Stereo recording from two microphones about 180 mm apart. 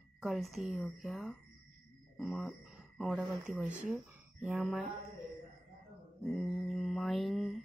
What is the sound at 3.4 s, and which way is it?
Speech, 5° right (ahead or behind).